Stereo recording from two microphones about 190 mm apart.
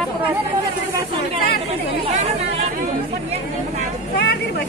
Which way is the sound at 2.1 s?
35° right (ahead or behind).